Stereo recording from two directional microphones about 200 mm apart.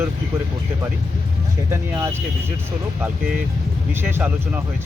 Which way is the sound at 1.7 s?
10° right (ahead or behind).